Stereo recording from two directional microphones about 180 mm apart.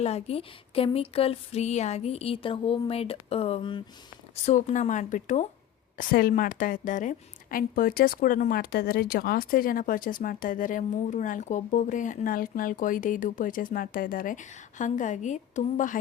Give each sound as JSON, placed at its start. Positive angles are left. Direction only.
{"t": 0.0, "sound": "speech", "side_deg": 35}
{"t": 4.4, "sound": "a woman's voice", "side_deg": 40}